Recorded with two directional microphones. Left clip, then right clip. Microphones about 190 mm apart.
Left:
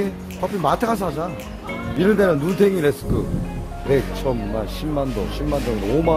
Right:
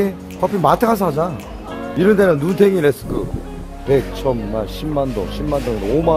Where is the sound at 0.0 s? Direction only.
35° right (ahead or behind).